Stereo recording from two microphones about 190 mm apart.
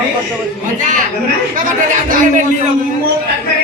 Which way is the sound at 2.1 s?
45° right (ahead or behind).